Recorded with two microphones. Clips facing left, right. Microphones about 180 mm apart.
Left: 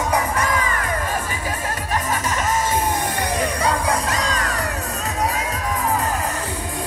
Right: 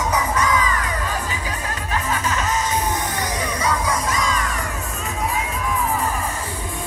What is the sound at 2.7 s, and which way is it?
Crowd, 55° left (ahead or behind).